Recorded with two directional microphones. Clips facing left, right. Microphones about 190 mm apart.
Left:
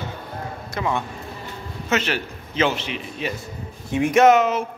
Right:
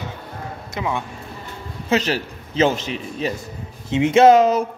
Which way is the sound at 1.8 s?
35° right (ahead or behind).